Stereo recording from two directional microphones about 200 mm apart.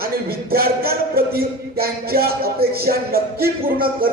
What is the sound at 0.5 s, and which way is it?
Music, 50° right (ahead or behind).